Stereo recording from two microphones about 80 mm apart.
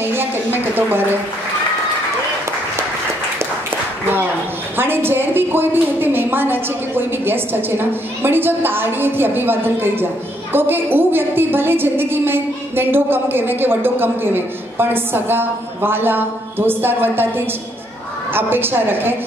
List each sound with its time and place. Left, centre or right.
0.1 s a woman's voice: right
4.7 s a woman's voice: right
18.3 s a woman's voice: right